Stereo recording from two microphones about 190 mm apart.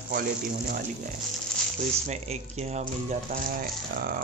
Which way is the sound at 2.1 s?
35° right (ahead or behind).